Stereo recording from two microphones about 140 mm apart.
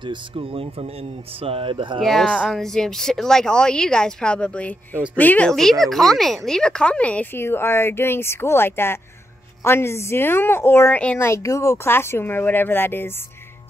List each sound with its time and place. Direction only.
0.0 s speech: 35° right (ahead or behind)
2.0 s speech: centre (ahead or behind)